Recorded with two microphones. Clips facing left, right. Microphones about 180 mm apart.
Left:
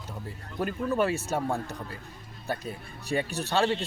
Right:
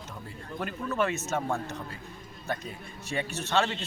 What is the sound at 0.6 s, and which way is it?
Speech, 35° left (ahead or behind).